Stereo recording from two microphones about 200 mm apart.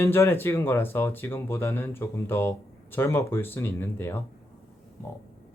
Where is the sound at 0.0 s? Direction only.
10° left (ahead or behind).